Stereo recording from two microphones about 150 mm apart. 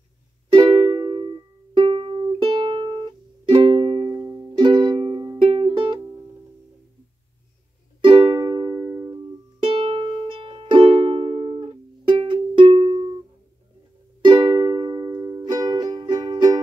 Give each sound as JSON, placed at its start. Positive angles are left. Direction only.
{"t": 0.5, "sound": "music", "side_deg": -25}
{"t": 1.1, "sound": "music", "side_deg": -35}
{"t": 8.0, "sound": "music", "side_deg": -30}
{"t": 9.6, "sound": "music", "side_deg": -35}
{"t": 14.2, "sound": "music", "side_deg": -25}